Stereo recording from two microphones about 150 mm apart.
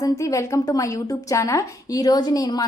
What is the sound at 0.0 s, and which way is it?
A woman's voice, 20° left (ahead or behind).